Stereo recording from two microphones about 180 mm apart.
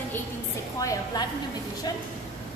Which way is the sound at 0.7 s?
20° left (ahead or behind).